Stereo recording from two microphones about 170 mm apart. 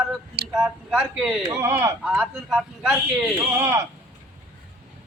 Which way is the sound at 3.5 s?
15° right (ahead or behind).